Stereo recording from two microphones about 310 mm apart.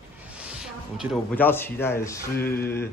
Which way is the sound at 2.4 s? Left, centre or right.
Left.